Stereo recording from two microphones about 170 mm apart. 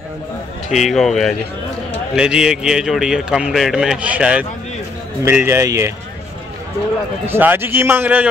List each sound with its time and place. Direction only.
0.7 s a man's voice: centre (ahead or behind); by 5.9 s 15° right (ahead or behind)
7.2 s a man's voice: 10° right (ahead or behind)